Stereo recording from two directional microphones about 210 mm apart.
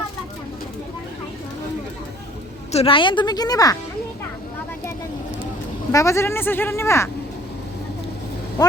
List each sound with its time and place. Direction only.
2.7 s a woman's voice: 25° left (ahead or behind)
5.9 s a woman's voice: 15° left (ahead or behind)